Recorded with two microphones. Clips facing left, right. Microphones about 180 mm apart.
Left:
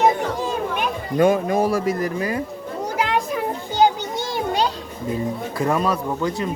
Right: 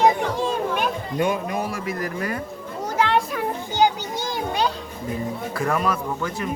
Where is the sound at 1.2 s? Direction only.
35° left (ahead or behind).